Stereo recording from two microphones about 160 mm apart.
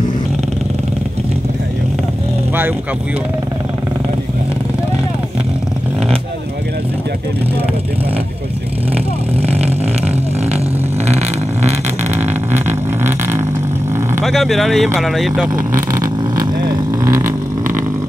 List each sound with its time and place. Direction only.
9.5 s vehicle: 40° right (ahead or behind)
12.2 s vehicle: 15° right (ahead or behind)
14.2 s speech: centre (ahead or behind)
15.9 s vehicle: 20° right (ahead or behind)